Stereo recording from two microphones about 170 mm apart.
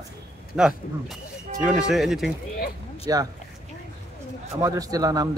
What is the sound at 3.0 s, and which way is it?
Speech, 20° right (ahead or behind).